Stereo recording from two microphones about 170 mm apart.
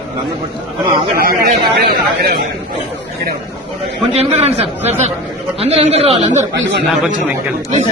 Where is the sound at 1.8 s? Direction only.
65° right (ahead or behind).